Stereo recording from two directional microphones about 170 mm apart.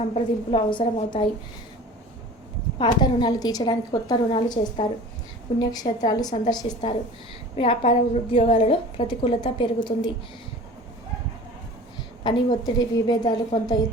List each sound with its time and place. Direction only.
0.1 s a woman's voice: 30° left (ahead or behind)
2.7 s a woman's voice: 25° left (ahead or behind)
12.6 s a woman's voice: 25° left (ahead or behind)